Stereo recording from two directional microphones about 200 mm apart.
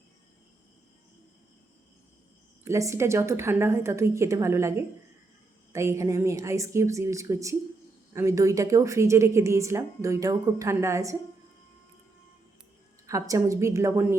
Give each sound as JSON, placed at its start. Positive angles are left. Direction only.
{"t": 2.6, "sound": "a woman's voice", "side_deg": -15}
{"t": 5.7, "sound": "a woman's voice", "side_deg": -15}
{"t": 13.1, "sound": "a woman's voice", "side_deg": -15}